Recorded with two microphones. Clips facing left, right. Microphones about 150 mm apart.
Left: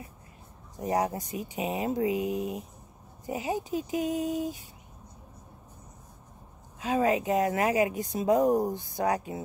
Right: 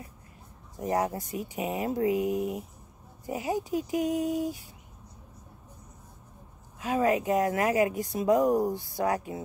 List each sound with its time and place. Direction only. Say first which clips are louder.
0.7 s speech: even; 20° left (ahead or behind)
6.8 s speech: even; 25° left (ahead or behind)